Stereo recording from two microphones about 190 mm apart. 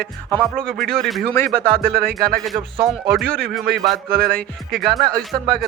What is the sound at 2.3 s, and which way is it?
Speech, centre (ahead or behind).